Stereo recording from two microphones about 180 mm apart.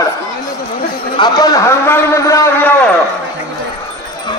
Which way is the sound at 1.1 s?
20° left (ahead or behind).